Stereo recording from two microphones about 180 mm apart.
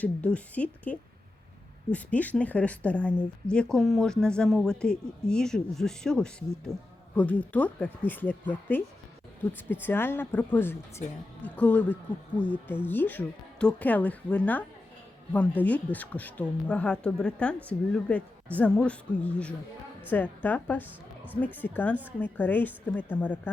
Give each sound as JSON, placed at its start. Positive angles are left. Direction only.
{"t": 0.0, "sound": "speech", "side_deg": 5}
{"t": 9.8, "sound": "speech", "side_deg": 10}